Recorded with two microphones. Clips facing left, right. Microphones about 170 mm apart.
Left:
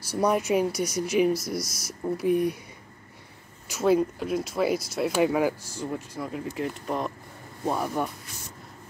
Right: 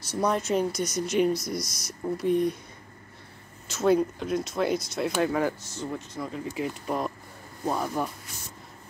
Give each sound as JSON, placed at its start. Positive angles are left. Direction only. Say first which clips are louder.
{"t": 0.1, "sound": "speech", "louder": "left 2 dB", "side_deg": 10}
{"t": 3.8, "sound": "speech", "louder": "even", "side_deg": 5}